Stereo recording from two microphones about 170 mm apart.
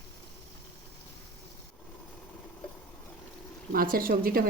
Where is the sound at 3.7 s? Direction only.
55° right (ahead or behind).